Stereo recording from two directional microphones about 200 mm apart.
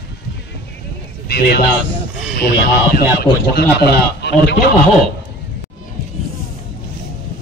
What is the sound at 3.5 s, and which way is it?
Speech, 55° left (ahead or behind).